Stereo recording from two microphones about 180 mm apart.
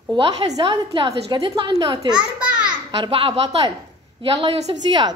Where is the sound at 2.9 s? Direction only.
30° right (ahead or behind).